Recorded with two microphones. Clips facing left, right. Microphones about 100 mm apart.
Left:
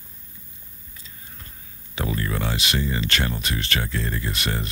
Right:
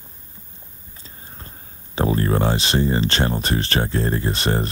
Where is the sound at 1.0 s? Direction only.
35° right (ahead or behind).